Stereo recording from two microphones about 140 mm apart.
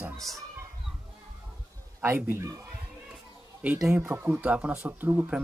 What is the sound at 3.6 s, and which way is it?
Speech, 5° right (ahead or behind).